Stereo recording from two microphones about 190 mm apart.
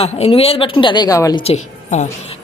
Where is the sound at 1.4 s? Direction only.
35° left (ahead or behind).